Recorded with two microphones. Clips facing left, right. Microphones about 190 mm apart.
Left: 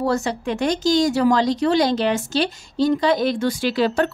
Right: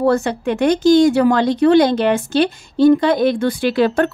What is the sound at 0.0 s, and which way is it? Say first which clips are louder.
Speech: right 5 dB; 60° right (ahead or behind).